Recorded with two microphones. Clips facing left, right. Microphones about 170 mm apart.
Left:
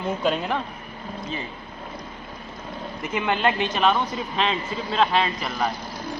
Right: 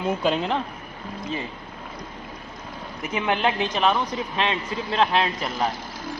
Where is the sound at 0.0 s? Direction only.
25° right (ahead or behind).